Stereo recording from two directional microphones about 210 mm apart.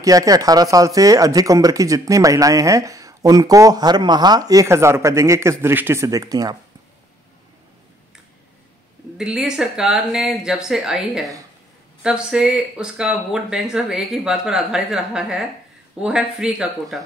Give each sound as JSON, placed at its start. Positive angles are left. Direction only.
{"t": 0.0, "sound": "speech", "side_deg": -15}
{"t": 9.2, "sound": "speech", "side_deg": -5}